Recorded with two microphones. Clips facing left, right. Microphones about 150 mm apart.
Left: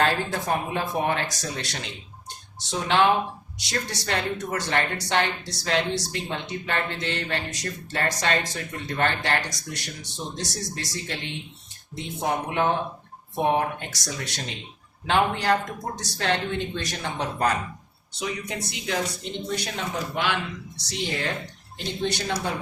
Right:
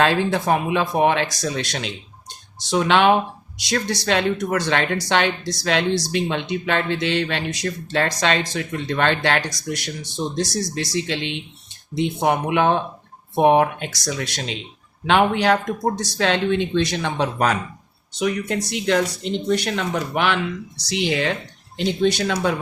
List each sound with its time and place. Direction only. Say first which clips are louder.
0.0 s speech: right 6 dB; 85° right
11.9 s speech: right 7 dB; 75° right (ahead or behind)